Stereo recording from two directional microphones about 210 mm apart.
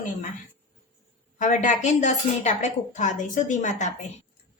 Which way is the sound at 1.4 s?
35° left (ahead or behind).